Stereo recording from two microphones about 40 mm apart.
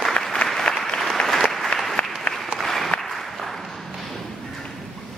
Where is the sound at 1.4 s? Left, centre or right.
Centre.